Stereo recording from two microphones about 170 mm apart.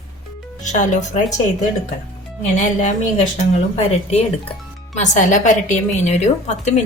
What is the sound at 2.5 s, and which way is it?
A woman's voice, 45° left (ahead or behind).